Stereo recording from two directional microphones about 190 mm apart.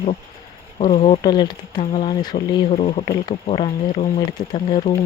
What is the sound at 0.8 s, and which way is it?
Speech, 30° left (ahead or behind).